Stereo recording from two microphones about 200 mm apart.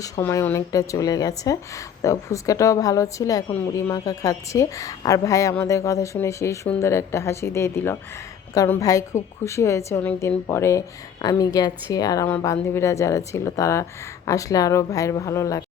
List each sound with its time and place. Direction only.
0.0 s speech: 15° left (ahead or behind)